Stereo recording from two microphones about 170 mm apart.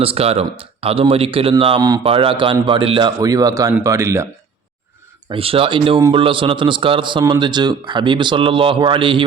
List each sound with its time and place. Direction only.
0.0 s a man's voice: 35° right (ahead or behind); by 4.3 s 15° right (ahead or behind)
5.3 s a man's voice: 35° right (ahead or behind)